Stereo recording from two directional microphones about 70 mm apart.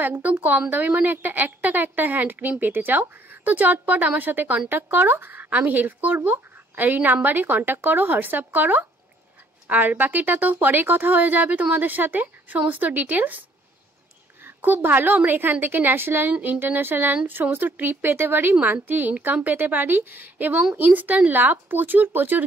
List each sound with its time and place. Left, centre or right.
0.0 s speech: right
14.4 s speech: right